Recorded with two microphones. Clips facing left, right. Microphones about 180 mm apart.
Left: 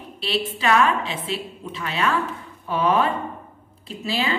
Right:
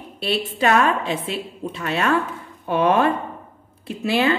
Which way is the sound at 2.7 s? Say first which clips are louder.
Right 3 dB; 55° right (ahead or behind).